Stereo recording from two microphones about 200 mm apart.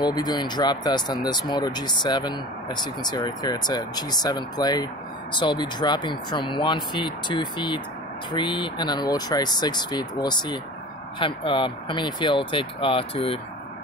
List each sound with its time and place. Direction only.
0.0 s speech: 20° left (ahead or behind)